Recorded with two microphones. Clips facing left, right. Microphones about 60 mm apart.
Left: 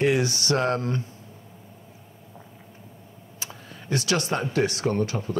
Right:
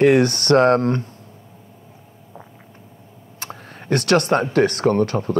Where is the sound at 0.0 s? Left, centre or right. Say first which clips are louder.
Right 8 dB; right.